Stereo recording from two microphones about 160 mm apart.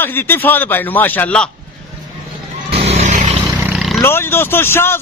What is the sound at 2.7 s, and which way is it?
Vehicle, 40° right (ahead or behind).